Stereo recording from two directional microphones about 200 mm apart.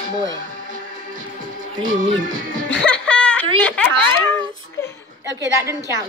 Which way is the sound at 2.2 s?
40° right (ahead or behind).